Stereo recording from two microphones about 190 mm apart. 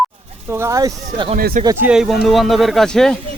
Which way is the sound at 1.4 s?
50° right (ahead or behind).